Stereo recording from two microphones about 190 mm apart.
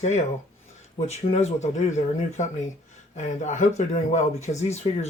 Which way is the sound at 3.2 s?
40° left (ahead or behind).